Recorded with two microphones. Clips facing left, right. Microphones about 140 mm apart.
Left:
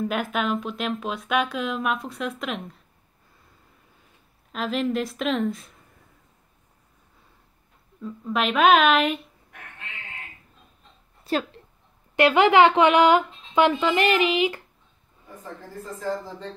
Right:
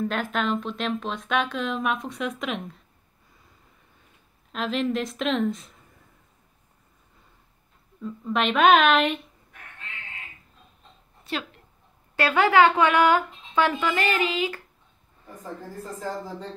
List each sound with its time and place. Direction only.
0.0 s speech: 5° left (ahead or behind)
4.5 s speech: centre (ahead or behind)
8.0 s speech: centre (ahead or behind)
11.2 s speech: 40° left (ahead or behind)
12.2 s speech: 20° left (ahead or behind)